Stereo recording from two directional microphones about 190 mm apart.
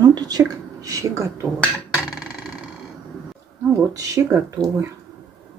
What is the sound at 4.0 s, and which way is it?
Speech, 15° right (ahead or behind).